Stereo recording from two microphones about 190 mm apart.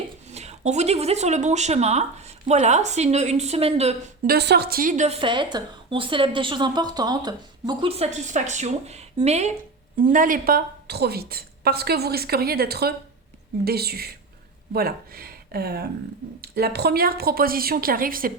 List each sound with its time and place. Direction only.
0.3 s speech: 35° right (ahead or behind)
4.3 s a woman's voice: 60° right (ahead or behind); by 5.1 s 40° right (ahead or behind)
5.2 s a woman's voice: 25° right (ahead or behind)
9.9 s a woman's voice: 45° right (ahead or behind)